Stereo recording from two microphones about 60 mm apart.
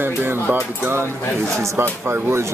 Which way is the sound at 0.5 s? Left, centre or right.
Right.